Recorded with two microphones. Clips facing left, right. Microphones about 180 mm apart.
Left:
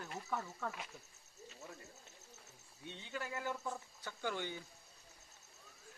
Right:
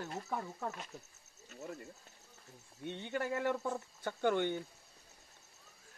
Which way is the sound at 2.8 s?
60° right (ahead or behind).